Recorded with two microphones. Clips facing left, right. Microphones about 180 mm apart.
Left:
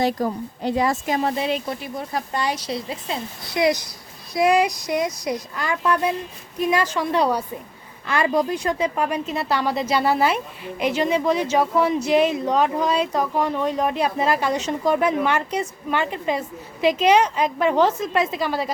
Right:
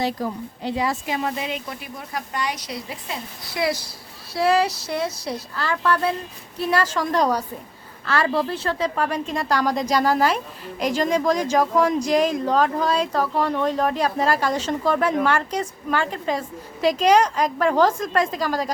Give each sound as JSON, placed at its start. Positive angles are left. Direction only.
{"t": 0.0, "sound": "speech", "side_deg": 50}
{"t": 1.2, "sound": "a woman's voice", "side_deg": 35}